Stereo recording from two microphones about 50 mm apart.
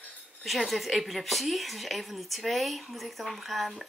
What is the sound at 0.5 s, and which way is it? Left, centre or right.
Speech, centre.